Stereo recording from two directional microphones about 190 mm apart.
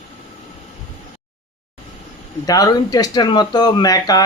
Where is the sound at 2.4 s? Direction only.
20° left (ahead or behind).